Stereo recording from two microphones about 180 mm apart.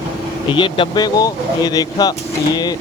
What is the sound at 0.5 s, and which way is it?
Speech, 30° left (ahead or behind).